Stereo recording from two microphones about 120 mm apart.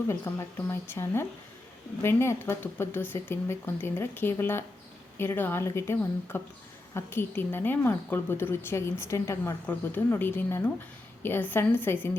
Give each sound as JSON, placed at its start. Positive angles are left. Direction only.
{"t": 0.1, "sound": "a woman's voice", "side_deg": 20}